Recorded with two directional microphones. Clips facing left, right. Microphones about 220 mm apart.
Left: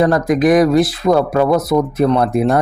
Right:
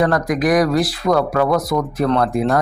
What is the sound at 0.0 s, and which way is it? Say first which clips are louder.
Speech: left 4 dB; 25° left (ahead or behind).